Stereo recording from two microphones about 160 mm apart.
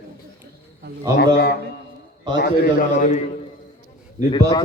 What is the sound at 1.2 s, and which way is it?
Speech, 90° left.